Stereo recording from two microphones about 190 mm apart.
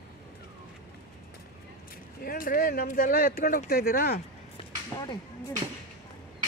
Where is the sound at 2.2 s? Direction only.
50° left (ahead or behind).